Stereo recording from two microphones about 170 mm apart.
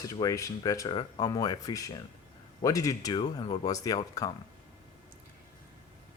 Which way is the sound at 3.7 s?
20° left (ahead or behind).